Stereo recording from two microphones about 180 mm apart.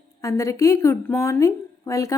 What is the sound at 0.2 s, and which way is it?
A woman's voice, 15° left (ahead or behind).